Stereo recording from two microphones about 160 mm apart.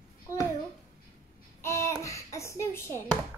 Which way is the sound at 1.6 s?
15° left (ahead or behind).